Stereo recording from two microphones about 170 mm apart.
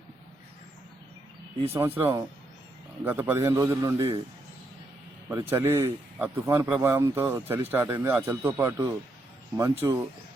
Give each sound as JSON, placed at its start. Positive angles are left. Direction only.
{"t": 1.7, "sound": "a man's voice", "side_deg": -15}
{"t": 5.3, "sound": "a man's voice", "side_deg": -15}